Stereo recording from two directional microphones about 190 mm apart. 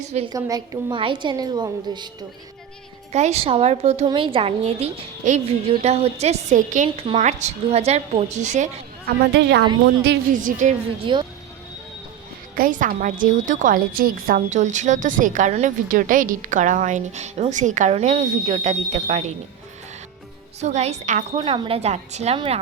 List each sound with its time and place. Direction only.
0.1 s a woman's voice: 30° right (ahead or behind)
0.3 s a woman's voice: 15° right (ahead or behind)
3.1 s a woman's voice: 35° right (ahead or behind)
9.3 s a woman's voice: 65° right (ahead or behind)
10.3 s a woman's voice: 40° right (ahead or behind)
11.0 s a woman's voice: 25° right (ahead or behind)
12.5 s a woman's voice: 45° right (ahead or behind)
20.6 s a woman's voice: 35° right (ahead or behind)